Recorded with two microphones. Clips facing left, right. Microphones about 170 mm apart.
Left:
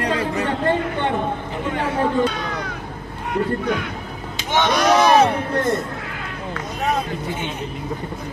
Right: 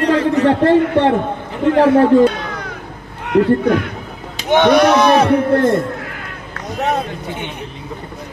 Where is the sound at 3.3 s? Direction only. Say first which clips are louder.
Right 9 dB; 85° right.